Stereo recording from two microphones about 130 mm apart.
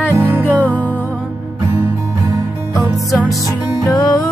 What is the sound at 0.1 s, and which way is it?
Music, 15° right (ahead or behind).